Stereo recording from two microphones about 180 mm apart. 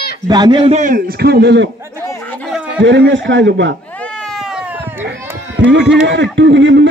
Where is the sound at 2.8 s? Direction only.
90° right.